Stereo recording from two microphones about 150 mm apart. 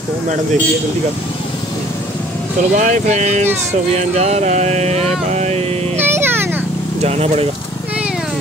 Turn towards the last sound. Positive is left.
turn(degrees=-45)  # may be behind; listen again after turning